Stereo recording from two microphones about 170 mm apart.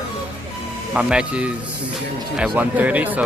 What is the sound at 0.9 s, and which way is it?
Speech, 5° right (ahead or behind).